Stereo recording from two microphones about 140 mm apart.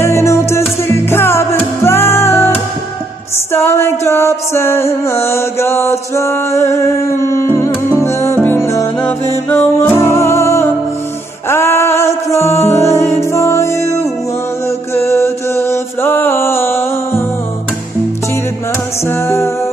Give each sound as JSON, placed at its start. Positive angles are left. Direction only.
{"t": 0.0, "sound": "music", "side_deg": 20}
{"t": 3.5, "sound": "music", "side_deg": 15}
{"t": 19.0, "sound": "music", "side_deg": 15}